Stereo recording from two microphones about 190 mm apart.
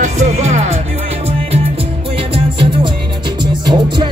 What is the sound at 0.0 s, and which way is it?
Music, 35° right (ahead or behind).